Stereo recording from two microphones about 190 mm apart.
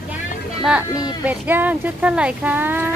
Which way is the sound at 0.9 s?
20° left (ahead or behind).